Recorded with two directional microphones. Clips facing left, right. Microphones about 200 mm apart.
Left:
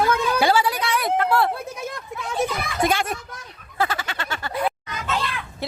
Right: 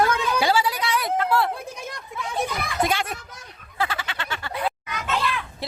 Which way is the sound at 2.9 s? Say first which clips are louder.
Left 3 dB; 45° left (ahead or behind).